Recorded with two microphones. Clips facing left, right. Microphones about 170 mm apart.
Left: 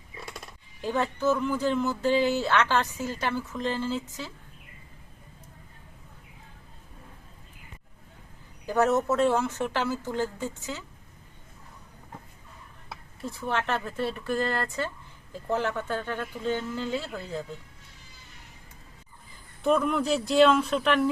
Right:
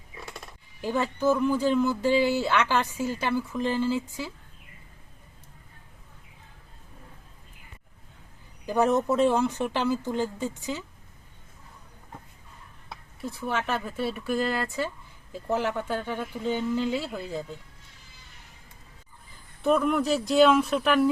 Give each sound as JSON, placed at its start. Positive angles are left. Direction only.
{"t": 0.8, "sound": "speech", "side_deg": -10}
{"t": 8.6, "sound": "speech", "side_deg": -15}
{"t": 12.9, "sound": "speech", "side_deg": 0}
{"t": 19.6, "sound": "speech", "side_deg": 0}